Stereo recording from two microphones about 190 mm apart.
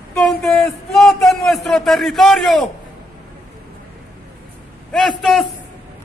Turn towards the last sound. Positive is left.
turn(degrees=0)  # may be behind; listen again after turning